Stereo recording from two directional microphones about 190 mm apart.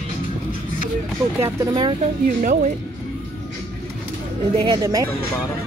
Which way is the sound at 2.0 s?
40° right (ahead or behind).